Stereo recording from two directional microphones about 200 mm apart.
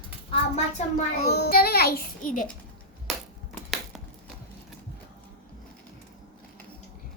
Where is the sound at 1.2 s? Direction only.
55° left (ahead or behind).